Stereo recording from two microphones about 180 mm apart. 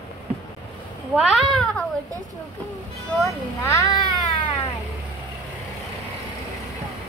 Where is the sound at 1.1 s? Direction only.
5° right (ahead or behind).